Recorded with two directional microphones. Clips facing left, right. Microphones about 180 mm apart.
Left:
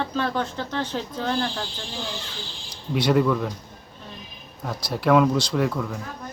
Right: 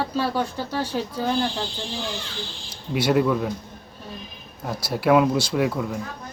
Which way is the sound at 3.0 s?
5° right (ahead or behind).